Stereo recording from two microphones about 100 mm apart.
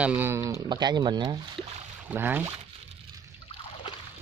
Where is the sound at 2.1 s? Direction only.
20° right (ahead or behind).